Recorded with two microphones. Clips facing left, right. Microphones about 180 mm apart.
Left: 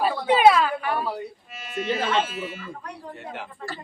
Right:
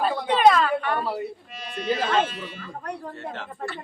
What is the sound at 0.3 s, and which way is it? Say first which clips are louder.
A man's voice: left 1 dB; 5° left (ahead or behind).